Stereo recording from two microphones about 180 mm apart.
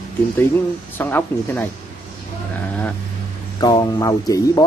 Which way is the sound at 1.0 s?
10° left (ahead or behind).